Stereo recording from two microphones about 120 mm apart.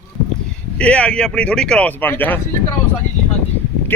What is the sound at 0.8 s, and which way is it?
Speech, 10° left (ahead or behind).